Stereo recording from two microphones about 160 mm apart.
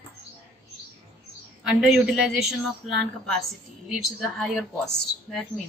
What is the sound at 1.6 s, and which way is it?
A woman's voice, 5° right (ahead or behind).